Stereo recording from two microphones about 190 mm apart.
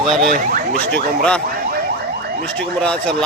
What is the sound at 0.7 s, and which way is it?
Speech, 50° left (ahead or behind).